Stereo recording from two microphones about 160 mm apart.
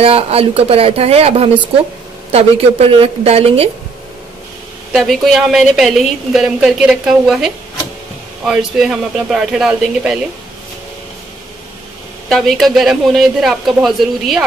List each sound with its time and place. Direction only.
0.0 s speech: 35° right (ahead or behind)
4.9 s a woman's voice: centre (ahead or behind)
12.3 s a woman's voice: centre (ahead or behind)